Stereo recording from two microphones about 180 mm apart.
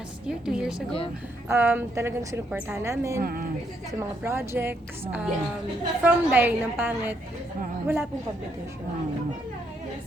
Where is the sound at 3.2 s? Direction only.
55° right (ahead or behind).